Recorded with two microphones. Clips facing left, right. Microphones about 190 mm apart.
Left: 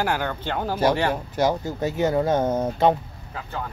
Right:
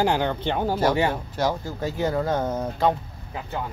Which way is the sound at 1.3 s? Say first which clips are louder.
Left 3 dB; 15° left (ahead or behind).